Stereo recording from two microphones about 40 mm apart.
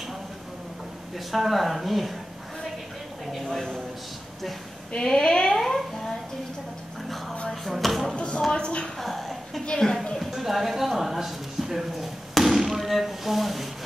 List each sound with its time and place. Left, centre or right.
1.1 s speech: centre
3.4 s speech: centre
5.0 s speech: centre
7.4 s speech: centre
8.5 s a woman's voice: left
8.9 s a sound: centre
9.7 s speech: centre
10.3 s speech: centre